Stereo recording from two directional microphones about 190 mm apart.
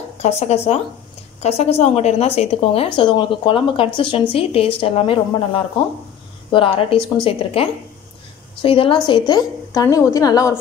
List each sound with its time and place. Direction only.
0.2 s a woman's voice: 35° left (ahead or behind); by 10.6 s 20° left (ahead or behind)